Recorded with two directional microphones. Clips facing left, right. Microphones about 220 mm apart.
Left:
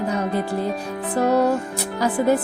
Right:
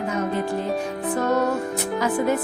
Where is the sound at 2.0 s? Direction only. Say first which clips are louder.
Left 4 dB; 35° left (ahead or behind).